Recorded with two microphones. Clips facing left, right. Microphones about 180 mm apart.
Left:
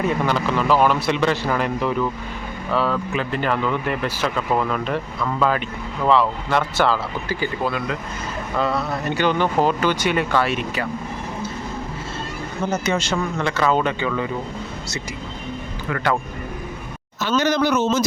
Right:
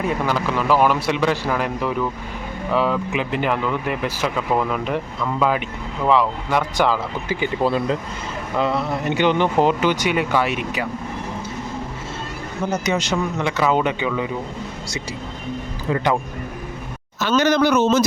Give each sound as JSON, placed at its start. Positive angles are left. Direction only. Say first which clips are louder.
{"t": 0.0, "sound": "speech", "louder": "left 1 dB", "side_deg": -5}
{"t": 7.6, "sound": "speech", "louder": "right 7 dB", "side_deg": -30}
{"t": 8.5, "sound": "speech", "louder": "right 1 dB", "side_deg": -20}
{"t": 12.8, "sound": "speech", "louder": "right 1 dB", "side_deg": -15}
{"t": 17.2, "sound": "speech", "louder": "right 2 dB", "side_deg": -65}